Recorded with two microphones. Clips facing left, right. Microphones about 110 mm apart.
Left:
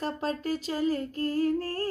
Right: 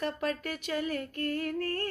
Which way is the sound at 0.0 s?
30° left (ahead or behind).